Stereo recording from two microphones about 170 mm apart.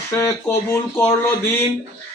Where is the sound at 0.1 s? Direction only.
15° left (ahead or behind).